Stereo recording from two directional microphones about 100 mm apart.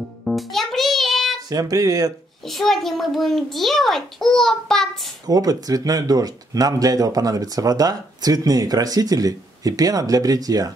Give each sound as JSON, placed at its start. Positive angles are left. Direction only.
{"t": 0.2, "sound": "music", "side_deg": 0}
{"t": 1.5, "sound": "speech", "side_deg": -35}
{"t": 2.4, "sound": "a child's voice", "side_deg": 0}
{"t": 5.2, "sound": "speech", "side_deg": -40}